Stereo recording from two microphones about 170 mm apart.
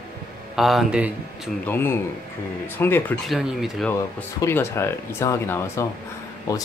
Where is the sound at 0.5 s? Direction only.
Centre (ahead or behind).